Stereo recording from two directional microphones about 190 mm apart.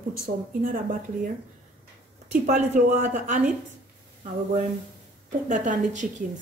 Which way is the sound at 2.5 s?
40° right (ahead or behind).